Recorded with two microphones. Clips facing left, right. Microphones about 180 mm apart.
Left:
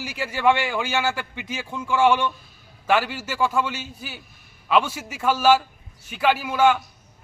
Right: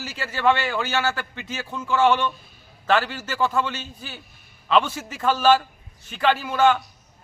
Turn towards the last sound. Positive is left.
turn(degrees=10)  # may be behind; listen again after turning